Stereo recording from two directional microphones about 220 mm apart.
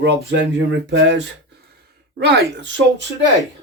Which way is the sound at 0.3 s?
55° right (ahead or behind).